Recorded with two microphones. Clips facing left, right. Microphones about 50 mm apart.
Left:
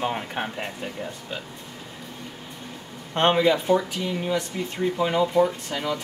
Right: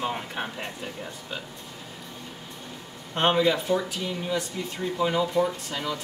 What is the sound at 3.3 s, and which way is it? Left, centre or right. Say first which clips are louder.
Speech: left 3 dB; centre.